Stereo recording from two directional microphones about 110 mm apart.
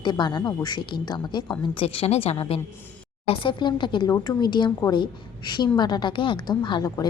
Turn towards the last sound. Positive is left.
turn(degrees=45)  # may be behind; listen again after turning